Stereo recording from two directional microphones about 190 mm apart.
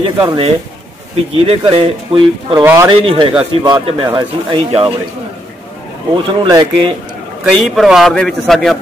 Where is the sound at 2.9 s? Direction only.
30° right (ahead or behind).